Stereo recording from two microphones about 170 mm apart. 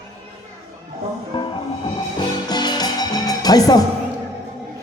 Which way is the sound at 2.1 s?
25° left (ahead or behind).